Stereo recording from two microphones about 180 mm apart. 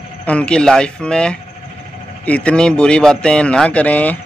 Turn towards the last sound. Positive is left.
turn(degrees=10)  # may be behind; listen again after turning